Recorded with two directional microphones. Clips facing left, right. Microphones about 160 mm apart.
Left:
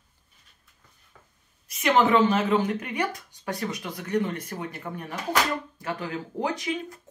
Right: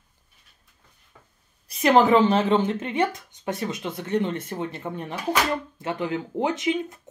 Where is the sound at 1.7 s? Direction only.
35° right (ahead or behind).